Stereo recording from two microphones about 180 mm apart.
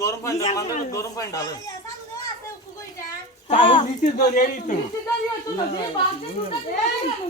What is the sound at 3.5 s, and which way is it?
Speech, 30° left (ahead or behind).